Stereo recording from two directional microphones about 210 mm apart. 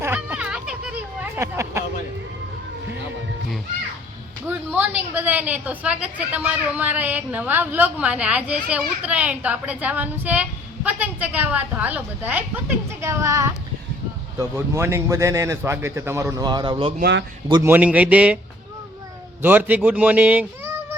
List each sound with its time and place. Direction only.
0.0 s hubbub: 10° right (ahead or behind)
4.4 s a sound: 5° right (ahead or behind)
4.9 s a woman's voice: 10° right (ahead or behind)
17.0 s a man's voice: 55° right (ahead or behind)
17.5 s a woman's voice: 10° right (ahead or behind)
19.4 s a woman's voice: 10° right (ahead or behind)